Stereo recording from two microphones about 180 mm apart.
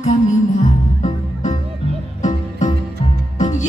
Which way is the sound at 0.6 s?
45° left (ahead or behind).